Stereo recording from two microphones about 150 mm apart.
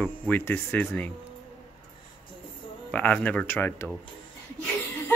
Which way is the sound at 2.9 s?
10° left (ahead or behind).